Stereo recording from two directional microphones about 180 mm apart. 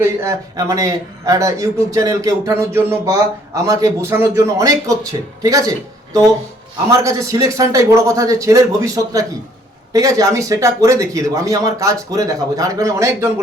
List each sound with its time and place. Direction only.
0.0 s a man's voice: 15° right (ahead or behind)
7.0 s a man's voice: 15° right (ahead or behind)